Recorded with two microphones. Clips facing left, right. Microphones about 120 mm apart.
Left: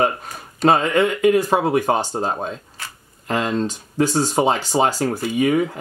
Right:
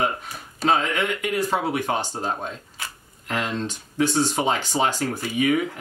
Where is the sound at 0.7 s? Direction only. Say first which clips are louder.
Left 6 dB; 45° left (ahead or behind).